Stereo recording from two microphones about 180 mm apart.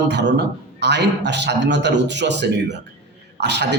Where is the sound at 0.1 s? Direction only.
70° right (ahead or behind).